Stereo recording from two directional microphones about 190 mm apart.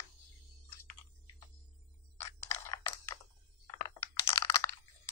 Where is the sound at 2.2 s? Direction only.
15° left (ahead or behind).